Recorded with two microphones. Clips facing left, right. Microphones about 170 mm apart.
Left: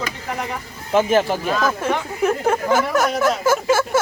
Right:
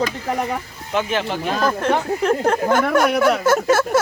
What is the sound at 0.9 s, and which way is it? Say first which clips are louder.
Speech: left 5 dB; 45° left (ahead or behind).